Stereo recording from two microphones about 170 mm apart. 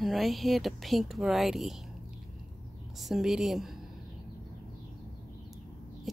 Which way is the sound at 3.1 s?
Centre (ahead or behind).